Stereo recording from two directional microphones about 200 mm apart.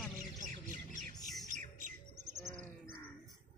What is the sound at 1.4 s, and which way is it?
Bird, 40° right (ahead or behind).